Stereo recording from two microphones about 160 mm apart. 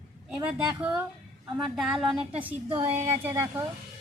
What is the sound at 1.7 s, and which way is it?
A woman's voice, 5° right (ahead or behind).